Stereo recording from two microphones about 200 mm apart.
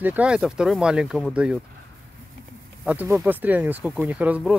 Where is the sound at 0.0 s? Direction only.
5° right (ahead or behind).